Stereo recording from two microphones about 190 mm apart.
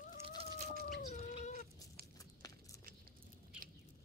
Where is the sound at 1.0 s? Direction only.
35° left (ahead or behind).